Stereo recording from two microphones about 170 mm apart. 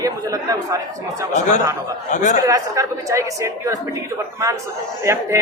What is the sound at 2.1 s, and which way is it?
Speech, 45° left (ahead or behind).